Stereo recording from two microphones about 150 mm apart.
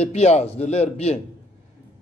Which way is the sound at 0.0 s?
45° left (ahead or behind).